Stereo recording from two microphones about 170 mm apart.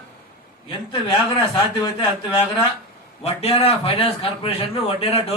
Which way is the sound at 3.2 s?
35° left (ahead or behind).